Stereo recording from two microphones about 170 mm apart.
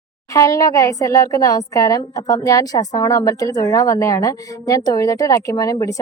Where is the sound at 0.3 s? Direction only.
20° left (ahead or behind).